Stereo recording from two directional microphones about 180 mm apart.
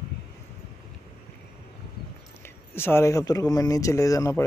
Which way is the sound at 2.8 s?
15° left (ahead or behind).